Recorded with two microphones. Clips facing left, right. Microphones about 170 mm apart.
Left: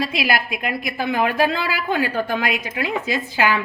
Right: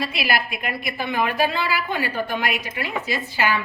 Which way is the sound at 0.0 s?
90° left.